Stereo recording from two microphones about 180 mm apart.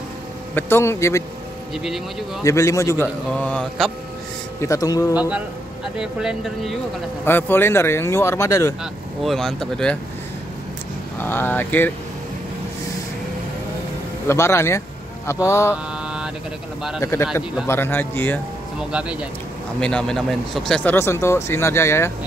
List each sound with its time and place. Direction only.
0.6 s speech: 15° left (ahead or behind)
2.4 s speech: 15° left (ahead or behind)
4.6 s speech: 20° left (ahead or behind)
5.9 s speech: centre (ahead or behind)
7.2 s speech: 10° left (ahead or behind)
9.2 s speech: centre (ahead or behind)
11.1 s speech: 10° left (ahead or behind)
14.2 s speech: 15° left (ahead or behind)
15.7 s mantra: 5° right (ahead or behind)
17.0 s speech: 15° left (ahead or behind)
18.8 s speech: 5° right (ahead or behind)
19.8 s speech: 5° left (ahead or behind)